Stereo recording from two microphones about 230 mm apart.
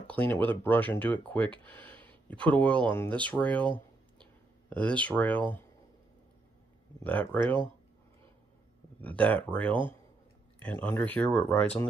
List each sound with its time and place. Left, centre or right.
0.3 s speech: centre
3.6 s a sound: right
4.6 s speech: centre
7.0 s speech: centre
9.0 s speech: centre